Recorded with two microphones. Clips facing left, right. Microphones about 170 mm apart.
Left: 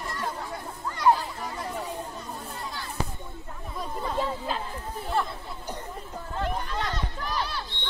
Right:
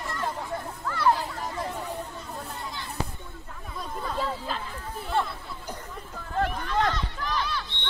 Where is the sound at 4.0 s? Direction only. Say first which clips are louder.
Left 1 dB; 15° left (ahead or behind).